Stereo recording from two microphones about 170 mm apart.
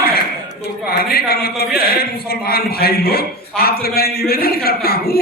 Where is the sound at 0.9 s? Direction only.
65° left (ahead or behind).